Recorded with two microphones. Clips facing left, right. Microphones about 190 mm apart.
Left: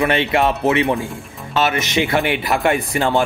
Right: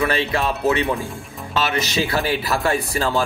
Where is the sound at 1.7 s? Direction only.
20° left (ahead or behind).